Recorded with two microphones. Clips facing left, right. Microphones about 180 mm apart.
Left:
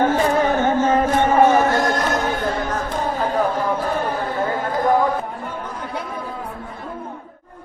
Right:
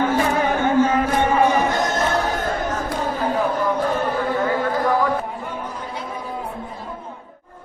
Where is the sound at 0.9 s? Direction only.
45° left (ahead or behind).